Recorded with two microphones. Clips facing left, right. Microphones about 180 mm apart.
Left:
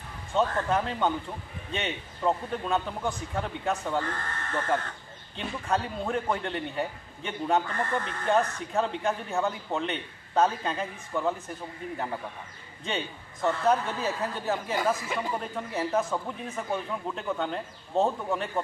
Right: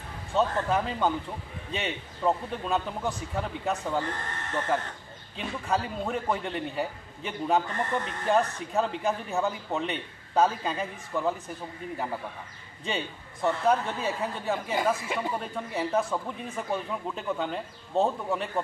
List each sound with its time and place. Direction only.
0.3 s speech: centre (ahead or behind)
4.0 s speech: 20° right (ahead or behind)
5.3 s speech: 5° right (ahead or behind)
12.8 s speech: centre (ahead or behind)
14.8 s speech: 20° right (ahead or behind)
15.3 s speech: centre (ahead or behind)